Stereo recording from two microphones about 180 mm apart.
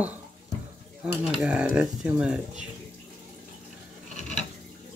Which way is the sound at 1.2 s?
5° right (ahead or behind).